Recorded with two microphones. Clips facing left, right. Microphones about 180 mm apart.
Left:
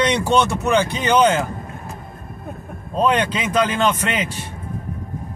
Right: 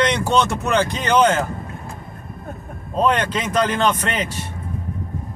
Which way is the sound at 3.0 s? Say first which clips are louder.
Even; 10° left (ahead or behind).